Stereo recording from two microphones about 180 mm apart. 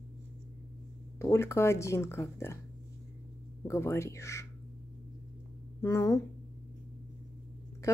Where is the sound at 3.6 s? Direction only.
15° left (ahead or behind).